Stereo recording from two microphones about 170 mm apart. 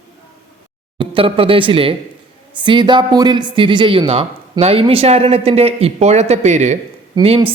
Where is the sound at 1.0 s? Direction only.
30° right (ahead or behind).